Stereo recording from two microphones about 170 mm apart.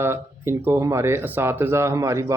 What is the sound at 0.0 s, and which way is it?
Speech, 15° right (ahead or behind).